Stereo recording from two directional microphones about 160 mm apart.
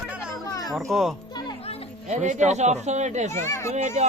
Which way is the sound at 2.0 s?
50° right (ahead or behind).